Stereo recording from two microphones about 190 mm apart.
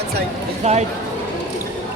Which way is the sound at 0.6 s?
35° right (ahead or behind).